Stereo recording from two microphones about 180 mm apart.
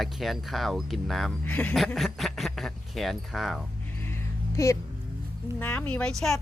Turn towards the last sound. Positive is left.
turn(degrees=0)  # may be behind; listen again after turning